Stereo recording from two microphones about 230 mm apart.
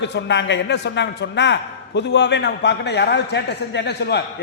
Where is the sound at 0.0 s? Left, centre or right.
Left.